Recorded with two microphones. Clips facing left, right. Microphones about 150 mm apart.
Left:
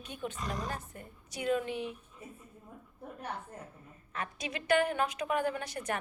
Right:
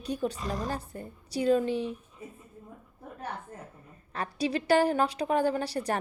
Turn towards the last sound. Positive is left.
turn(degrees=-35)  # may be behind; listen again after turning